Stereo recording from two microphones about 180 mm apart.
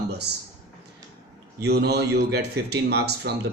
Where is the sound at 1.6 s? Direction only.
65° right (ahead or behind).